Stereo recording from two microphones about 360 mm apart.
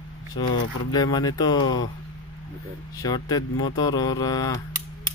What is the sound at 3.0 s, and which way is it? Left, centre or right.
Speech, centre.